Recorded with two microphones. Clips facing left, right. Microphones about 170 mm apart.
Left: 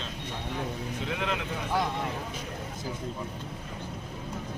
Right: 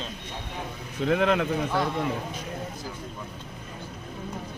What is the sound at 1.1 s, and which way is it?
Speech, 50° right (ahead or behind).